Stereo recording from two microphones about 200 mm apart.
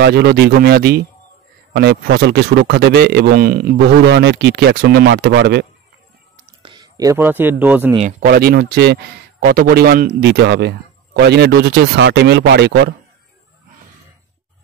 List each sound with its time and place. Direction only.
0.0 s a man's voice: 55° right (ahead or behind)
6.3 s a sound: 25° right (ahead or behind); by 7.9 s 10° right (ahead or behind)
8.0 s speech: 45° right (ahead or behind)